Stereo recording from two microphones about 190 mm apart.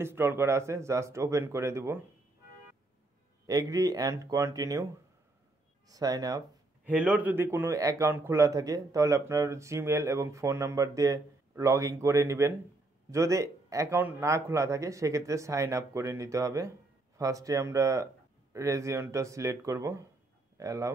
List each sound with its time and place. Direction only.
0.0 s a man's voice: 10° right (ahead or behind)
3.4 s a man's voice: 20° right (ahead or behind)
5.9 s speech: 20° right (ahead or behind)
6.9 s a man's voice: 5° right (ahead or behind)